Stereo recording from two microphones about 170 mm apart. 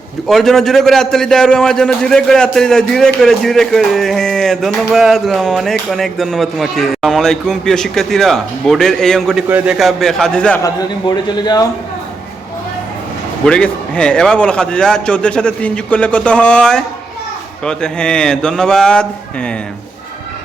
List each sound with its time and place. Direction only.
0.3 s speech: centre (ahead or behind)
10.6 s a man's voice: 20° left (ahead or behind)
13.4 s speech: 5° left (ahead or behind)